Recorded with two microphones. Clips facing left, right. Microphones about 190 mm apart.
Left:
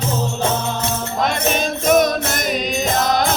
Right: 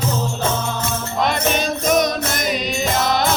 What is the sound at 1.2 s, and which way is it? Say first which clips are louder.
Music: even; 45° left (ahead or behind).